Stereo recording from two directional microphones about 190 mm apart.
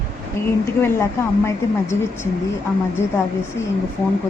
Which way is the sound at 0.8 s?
15° left (ahead or behind).